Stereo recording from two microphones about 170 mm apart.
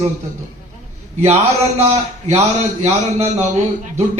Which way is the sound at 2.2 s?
40° right (ahead or behind).